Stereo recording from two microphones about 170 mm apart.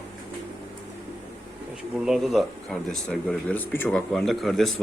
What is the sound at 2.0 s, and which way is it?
Speech, centre (ahead or behind).